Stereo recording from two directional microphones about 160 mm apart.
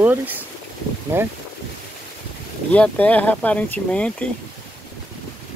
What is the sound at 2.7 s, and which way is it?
Speech, 10° left (ahead or behind).